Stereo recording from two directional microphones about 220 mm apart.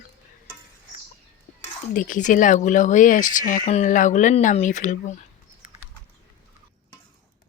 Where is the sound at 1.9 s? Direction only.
40° left (ahead or behind).